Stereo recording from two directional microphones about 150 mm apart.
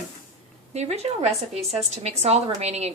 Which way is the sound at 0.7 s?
45° right (ahead or behind).